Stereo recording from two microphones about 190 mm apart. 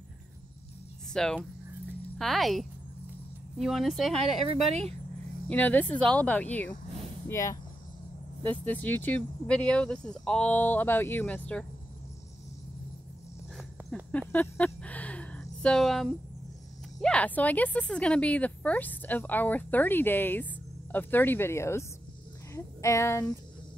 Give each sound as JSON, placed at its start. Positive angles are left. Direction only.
{"t": 1.1, "sound": "speech", "side_deg": 5}
{"t": 5.5, "sound": "speech", "side_deg": 10}
{"t": 13.6, "sound": "a sound", "side_deg": 0}
{"t": 17.0, "sound": "speech", "side_deg": 5}